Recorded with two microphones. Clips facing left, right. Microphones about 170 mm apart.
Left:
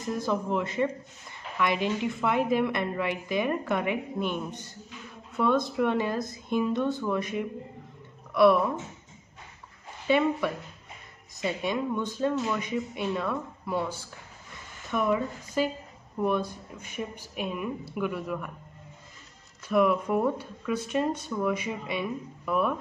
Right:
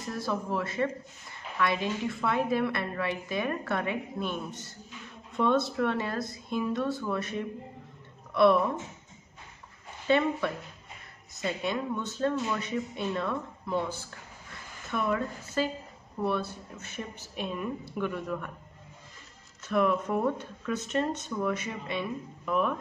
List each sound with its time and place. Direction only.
0.0 s a woman's voice: 20° left (ahead or behind)
10.0 s a woman's voice: 10° left (ahead or behind)
19.7 s a woman's voice: 10° left (ahead or behind)